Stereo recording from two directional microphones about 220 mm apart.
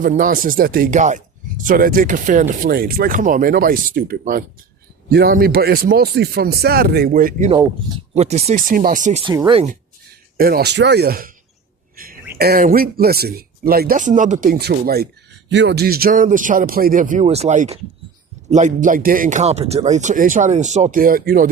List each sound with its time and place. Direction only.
0.0 s speech: 40° right (ahead or behind)
7.5 s speech: 20° right (ahead or behind)
9.2 s speech: 20° right (ahead or behind)
10.3 s speech: 45° right (ahead or behind)
12.0 s bird: 40° right (ahead or behind)
12.4 s speech: 40° right (ahead or behind)